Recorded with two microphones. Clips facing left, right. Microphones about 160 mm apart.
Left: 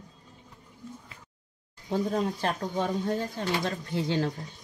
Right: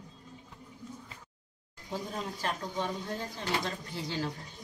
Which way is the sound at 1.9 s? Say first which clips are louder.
Left 9 dB; 55° left (ahead or behind).